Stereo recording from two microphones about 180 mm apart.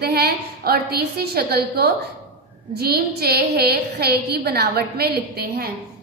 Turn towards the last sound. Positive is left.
turn(degrees=-60)  # may be behind; listen again after turning